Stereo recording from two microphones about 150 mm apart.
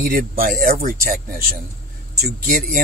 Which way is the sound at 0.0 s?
75° right (ahead or behind).